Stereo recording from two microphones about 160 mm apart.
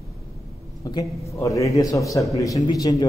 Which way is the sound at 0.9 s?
20° left (ahead or behind).